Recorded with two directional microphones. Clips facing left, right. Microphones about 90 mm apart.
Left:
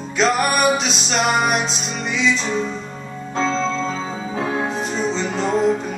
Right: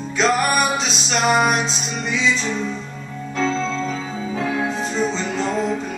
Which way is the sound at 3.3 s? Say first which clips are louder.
Left 1 dB; 25° left (ahead or behind).